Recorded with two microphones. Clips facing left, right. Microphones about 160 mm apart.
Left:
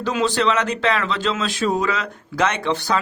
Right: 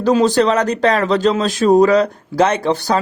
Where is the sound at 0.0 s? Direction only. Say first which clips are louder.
Right 7 dB; 40° right (ahead or behind).